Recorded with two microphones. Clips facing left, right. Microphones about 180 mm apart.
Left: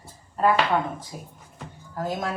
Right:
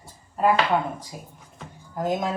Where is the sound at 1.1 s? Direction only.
5° right (ahead or behind).